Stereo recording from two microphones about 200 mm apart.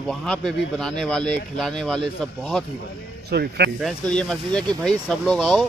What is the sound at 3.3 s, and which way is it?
Speech, 55° right (ahead or behind).